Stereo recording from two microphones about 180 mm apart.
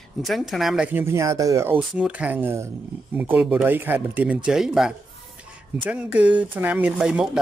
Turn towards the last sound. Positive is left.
turn(degrees=-5)  # may be behind; listen again after turning